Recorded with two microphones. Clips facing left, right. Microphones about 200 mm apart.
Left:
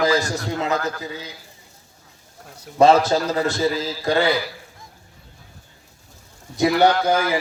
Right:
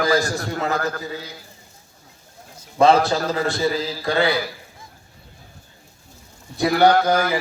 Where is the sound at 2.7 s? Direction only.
40° left (ahead or behind).